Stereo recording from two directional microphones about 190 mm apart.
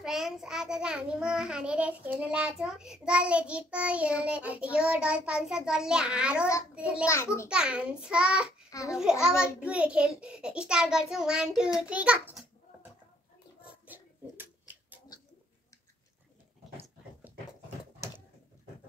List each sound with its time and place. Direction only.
0.0 s child singing: centre (ahead or behind)
13.6 s hands: 10° right (ahead or behind)